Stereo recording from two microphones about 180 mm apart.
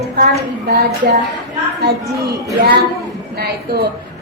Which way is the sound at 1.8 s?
60° right (ahead or behind).